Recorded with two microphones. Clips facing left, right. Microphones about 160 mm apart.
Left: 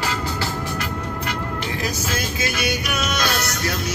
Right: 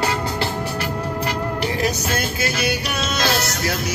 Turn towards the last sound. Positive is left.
turn(degrees=-30)  # may be behind; listen again after turning